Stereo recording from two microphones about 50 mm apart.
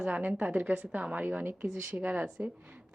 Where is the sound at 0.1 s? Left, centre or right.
Right.